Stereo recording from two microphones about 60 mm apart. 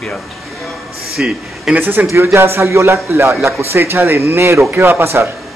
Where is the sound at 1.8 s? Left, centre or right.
Right.